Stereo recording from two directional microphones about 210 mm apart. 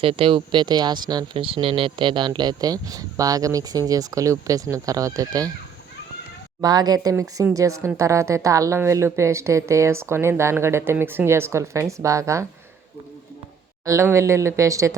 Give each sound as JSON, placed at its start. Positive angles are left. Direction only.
{"t": 0.0, "sound": "speech", "side_deg": -25}
{"t": 6.6, "sound": "speech", "side_deg": -20}
{"t": 13.8, "sound": "speech", "side_deg": -15}